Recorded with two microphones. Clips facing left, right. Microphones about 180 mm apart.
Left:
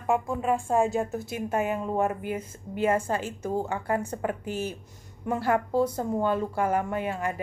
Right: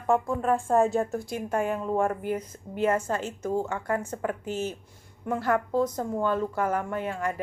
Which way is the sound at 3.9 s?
35° left (ahead or behind).